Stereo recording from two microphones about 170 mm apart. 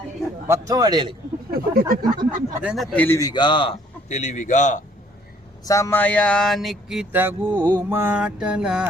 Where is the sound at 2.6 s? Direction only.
Centre (ahead or behind); by 3.7 s 30° left (ahead or behind).